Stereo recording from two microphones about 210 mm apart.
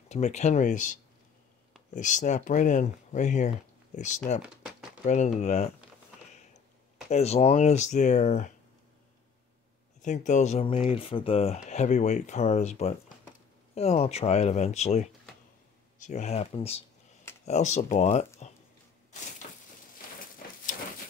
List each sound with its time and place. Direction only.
0.1 s speech: 35° left (ahead or behind)
7.1 s speech: 30° left (ahead or behind)
10.0 s speech: 35° left (ahead or behind)
19.4 s crushing: 35° left (ahead or behind)